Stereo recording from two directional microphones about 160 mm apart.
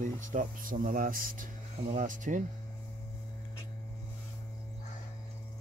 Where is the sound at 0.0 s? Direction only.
50° right (ahead or behind).